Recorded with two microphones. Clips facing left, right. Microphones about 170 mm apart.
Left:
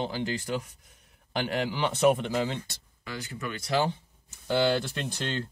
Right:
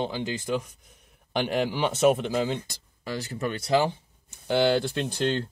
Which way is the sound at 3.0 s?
35° right (ahead or behind).